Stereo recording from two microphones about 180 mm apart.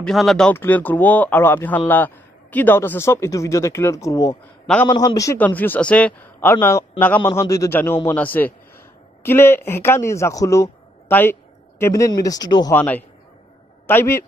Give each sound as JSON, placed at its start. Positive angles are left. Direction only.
{"t": 0.0, "sound": "a man's voice", "side_deg": 0}
{"t": 12.7, "sound": "a man's voice", "side_deg": 10}